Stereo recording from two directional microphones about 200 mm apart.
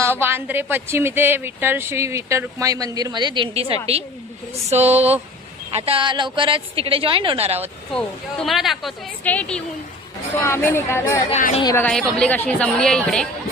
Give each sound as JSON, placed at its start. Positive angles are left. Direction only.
{"t": 0.0, "sound": "speech", "side_deg": -10}
{"t": 4.7, "sound": "a sound", "side_deg": -30}
{"t": 5.7, "sound": "a woman's voice", "side_deg": -30}
{"t": 7.9, "sound": "a woman's voice", "side_deg": 0}
{"t": 11.3, "sound": "speech", "side_deg": 35}
{"t": 11.6, "sound": "speech", "side_deg": 15}
{"t": 11.9, "sound": "a woman's voice", "side_deg": 5}